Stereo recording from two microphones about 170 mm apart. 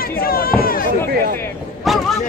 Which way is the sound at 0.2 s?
60° left (ahead or behind).